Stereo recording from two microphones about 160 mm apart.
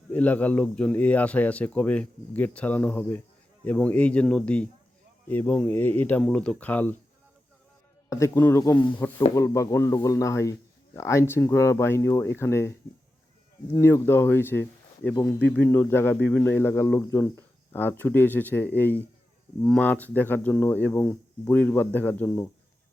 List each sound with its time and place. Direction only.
0.1 s a man's voice: 10° left (ahead or behind)
8.1 s a man's voice: 15° left (ahead or behind)
13.7 s a man's voice: 15° left (ahead or behind)